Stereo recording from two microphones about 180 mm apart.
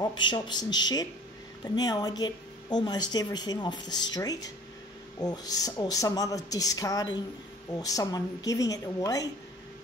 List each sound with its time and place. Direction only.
0.0 s speech: 25° left (ahead or behind)